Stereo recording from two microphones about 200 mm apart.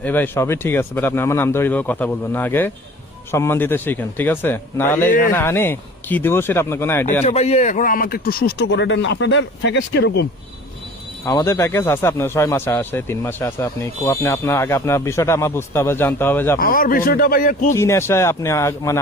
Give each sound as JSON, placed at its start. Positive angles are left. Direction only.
{"t": 0.0, "sound": "speech", "side_deg": 10}
{"t": 7.3, "sound": "a man's voice", "side_deg": 35}
{"t": 11.3, "sound": "speech", "side_deg": 15}
{"t": 16.6, "sound": "speech", "side_deg": 45}
{"t": 17.7, "sound": "speech", "side_deg": 15}